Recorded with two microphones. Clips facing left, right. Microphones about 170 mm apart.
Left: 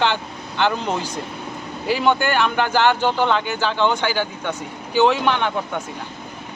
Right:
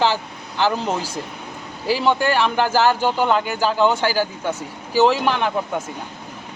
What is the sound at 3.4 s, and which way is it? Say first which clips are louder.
Speech: right 2 dB; 40° right (ahead or behind).